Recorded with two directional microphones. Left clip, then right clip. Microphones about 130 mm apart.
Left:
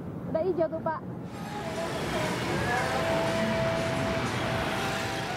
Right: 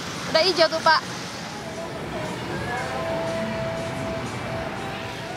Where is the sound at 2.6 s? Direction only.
Centre (ahead or behind).